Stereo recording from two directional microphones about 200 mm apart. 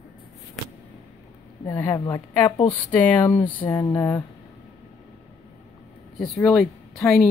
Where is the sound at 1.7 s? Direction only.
15° left (ahead or behind).